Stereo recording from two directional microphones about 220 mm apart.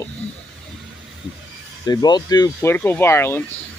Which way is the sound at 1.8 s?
20° left (ahead or behind).